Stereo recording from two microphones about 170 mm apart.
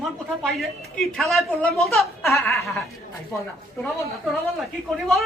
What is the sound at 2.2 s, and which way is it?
Speech, 15° left (ahead or behind).